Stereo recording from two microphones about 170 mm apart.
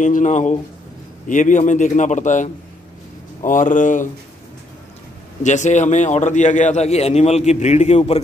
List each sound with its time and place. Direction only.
0.0 s a man's voice: 45° left (ahead or behind)
5.4 s a man's voice: 45° left (ahead or behind)